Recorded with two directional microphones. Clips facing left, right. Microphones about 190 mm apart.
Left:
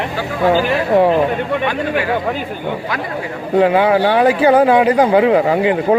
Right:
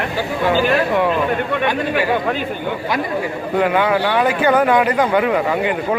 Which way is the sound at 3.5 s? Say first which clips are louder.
Left 5 dB; 30° left (ahead or behind).